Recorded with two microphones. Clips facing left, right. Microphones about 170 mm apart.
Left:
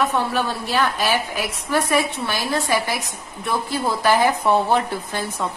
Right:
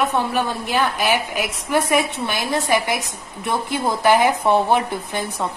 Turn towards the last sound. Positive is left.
turn(degrees=-15)  # may be behind; listen again after turning